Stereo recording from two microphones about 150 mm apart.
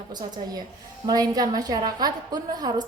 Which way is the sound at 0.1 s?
25° right (ahead or behind).